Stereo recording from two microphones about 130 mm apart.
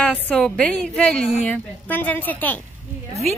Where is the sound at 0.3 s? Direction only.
10° left (ahead or behind).